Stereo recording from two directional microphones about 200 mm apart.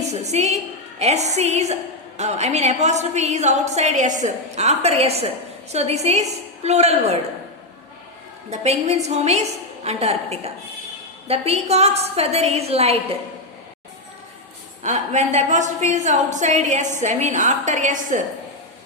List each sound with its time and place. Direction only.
0.1 s a woman's voice: 35° right (ahead or behind)
8.4 s a woman's voice: 30° right (ahead or behind)
14.8 s a woman's voice: 35° right (ahead or behind)